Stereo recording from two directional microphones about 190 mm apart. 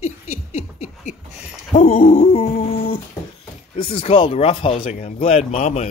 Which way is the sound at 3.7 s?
30° left (ahead or behind).